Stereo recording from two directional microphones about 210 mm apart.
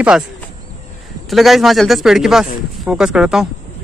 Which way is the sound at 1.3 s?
Centre (ahead or behind).